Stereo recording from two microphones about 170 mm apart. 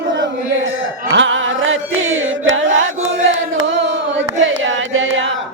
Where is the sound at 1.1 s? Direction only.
90° right.